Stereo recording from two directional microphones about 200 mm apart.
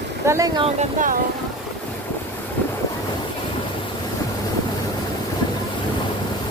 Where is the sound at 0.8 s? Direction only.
40° right (ahead or behind).